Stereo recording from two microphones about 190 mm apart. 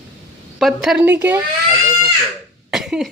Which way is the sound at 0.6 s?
Centre (ahead or behind).